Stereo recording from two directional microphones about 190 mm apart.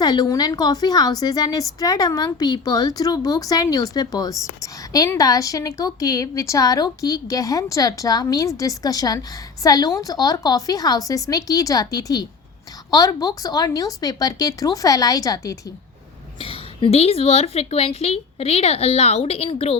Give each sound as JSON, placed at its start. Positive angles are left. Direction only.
{"t": 0.0, "sound": "a woman's voice", "side_deg": 20}
{"t": 16.4, "sound": "a woman's voice", "side_deg": 30}